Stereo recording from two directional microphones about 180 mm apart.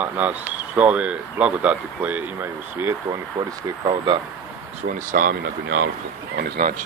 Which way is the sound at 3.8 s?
25° right (ahead or behind).